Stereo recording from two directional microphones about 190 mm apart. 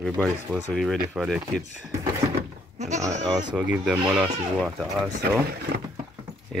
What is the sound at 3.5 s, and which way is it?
Speech, 5° right (ahead or behind).